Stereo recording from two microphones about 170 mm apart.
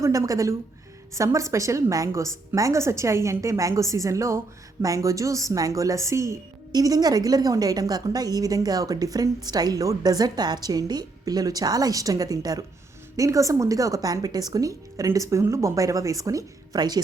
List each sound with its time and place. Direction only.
0.0 s a woman's voice: 20° right (ahead or behind)